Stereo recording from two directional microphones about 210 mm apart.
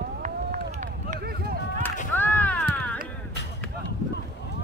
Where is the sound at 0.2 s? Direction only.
35° right (ahead or behind).